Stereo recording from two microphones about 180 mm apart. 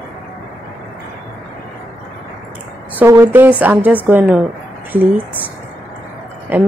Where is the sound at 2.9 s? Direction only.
15° right (ahead or behind).